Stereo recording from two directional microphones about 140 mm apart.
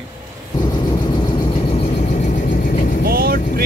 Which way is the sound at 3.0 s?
90° right.